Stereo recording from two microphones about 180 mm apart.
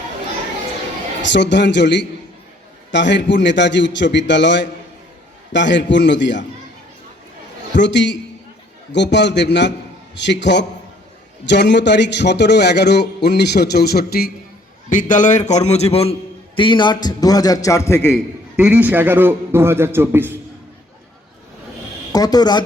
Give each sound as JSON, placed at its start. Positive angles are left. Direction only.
{"t": 1.2, "sound": "a man's voice", "side_deg": 75}
{"t": 7.7, "sound": "a man's voice", "side_deg": 75}
{"t": 14.8, "sound": "a man's voice", "side_deg": 45}
{"t": 18.5, "sound": "a man's voice", "side_deg": -10}
{"t": 22.1, "sound": "a man's voice", "side_deg": 20}